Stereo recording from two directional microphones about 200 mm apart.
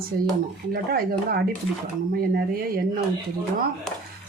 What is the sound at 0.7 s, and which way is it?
Speech, 50° right (ahead or behind).